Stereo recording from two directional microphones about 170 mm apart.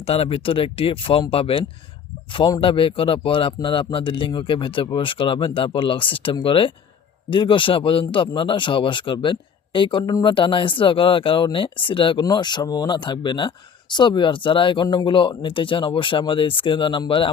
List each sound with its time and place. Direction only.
0.0 s speech: 35° left (ahead or behind)